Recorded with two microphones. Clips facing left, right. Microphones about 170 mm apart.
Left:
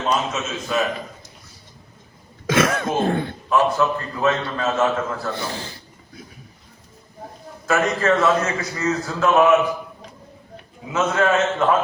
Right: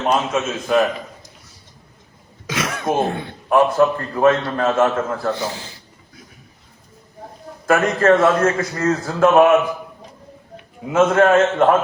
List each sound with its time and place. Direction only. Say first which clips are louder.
0.0 s a man's voice: right 4 dB; 55° right (ahead or behind)
2.5 s speech: left 2 dB; 50° left (ahead or behind)
3.5 s a man's voice: right 4 dB; 50° right (ahead or behind)
7.7 s a man's voice: right 4 dB; 55° right (ahead or behind)
10.8 s a man's voice: right 6 dB; 50° right (ahead or behind)